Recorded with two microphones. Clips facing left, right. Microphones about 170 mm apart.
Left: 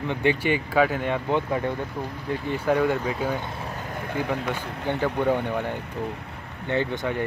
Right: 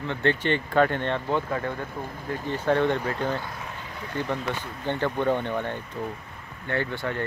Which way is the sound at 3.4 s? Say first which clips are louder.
Left 3 dB; 30° left (ahead or behind).